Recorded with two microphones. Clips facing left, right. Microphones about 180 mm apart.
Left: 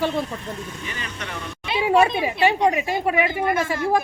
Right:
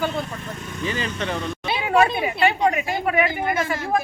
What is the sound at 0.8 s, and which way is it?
Speech, 30° right (ahead or behind).